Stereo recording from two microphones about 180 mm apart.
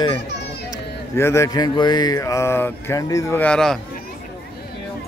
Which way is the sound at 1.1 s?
15° left (ahead or behind).